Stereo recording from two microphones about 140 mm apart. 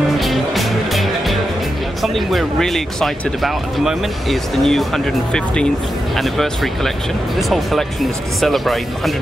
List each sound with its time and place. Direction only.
0.2 s music: centre (ahead or behind)
2.0 s speech: centre (ahead or behind)